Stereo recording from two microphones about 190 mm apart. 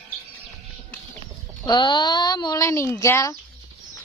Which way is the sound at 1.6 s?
25° left (ahead or behind).